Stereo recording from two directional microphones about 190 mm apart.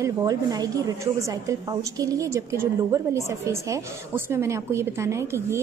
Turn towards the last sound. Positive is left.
turn(degrees=-15)  # may be behind; listen again after turning